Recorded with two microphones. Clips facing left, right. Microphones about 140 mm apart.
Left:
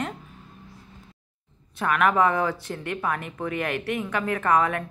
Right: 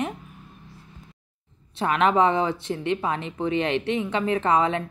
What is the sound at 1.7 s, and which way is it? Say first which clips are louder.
Speech: right 1 dB; 25° right (ahead or behind).